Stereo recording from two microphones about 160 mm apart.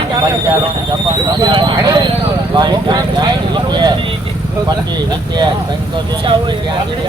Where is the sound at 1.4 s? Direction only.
30° right (ahead or behind).